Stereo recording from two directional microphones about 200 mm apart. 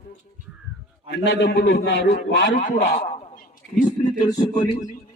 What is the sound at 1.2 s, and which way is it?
A man's voice, 60° left (ahead or behind).